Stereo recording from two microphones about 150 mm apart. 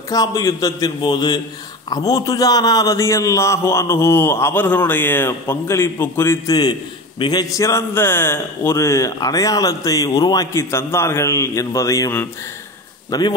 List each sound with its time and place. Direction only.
0.1 s a man's voice: 25° left (ahead or behind)